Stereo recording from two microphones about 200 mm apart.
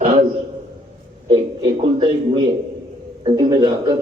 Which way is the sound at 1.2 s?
25° right (ahead or behind).